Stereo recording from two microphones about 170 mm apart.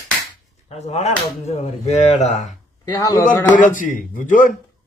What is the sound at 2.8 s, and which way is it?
Speech, 20° left (ahead or behind).